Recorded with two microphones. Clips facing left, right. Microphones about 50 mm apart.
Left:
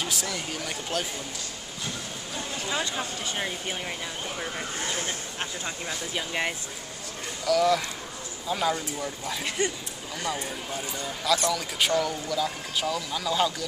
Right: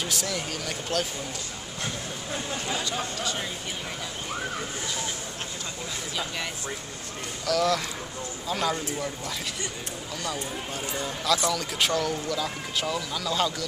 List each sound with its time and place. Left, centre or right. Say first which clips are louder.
0.0 s speech: right 1 dB; centre
2.7 s speech: left 2 dB; left
4.8 s a sound: left 1 dB; left
6.1 s speech: left 4 dB; left
7.4 s speech: left 2 dB; centre
10.7 s speech: right 1 dB; centre